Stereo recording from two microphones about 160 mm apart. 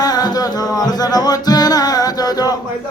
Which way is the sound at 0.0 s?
25° left (ahead or behind).